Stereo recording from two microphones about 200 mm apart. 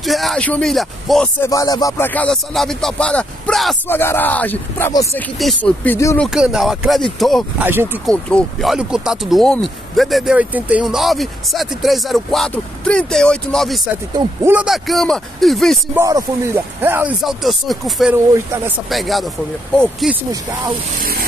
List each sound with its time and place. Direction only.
0.0 s speech: centre (ahead or behind)
1.4 s speech: 15° left (ahead or behind)
6.2 s speech: 5° right (ahead or behind)
7.6 s speech: 10° right (ahead or behind)
8.1 s speech: 5° left (ahead or behind)
14.1 s speech: 10° right (ahead or behind)
16.0 s speech: 15° right (ahead or behind); by 20.2 s centre (ahead or behind)
21.0 s speech: 45° right (ahead or behind)